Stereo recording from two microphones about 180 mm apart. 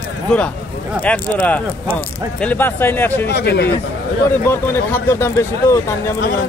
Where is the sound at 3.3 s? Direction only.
65° left (ahead or behind).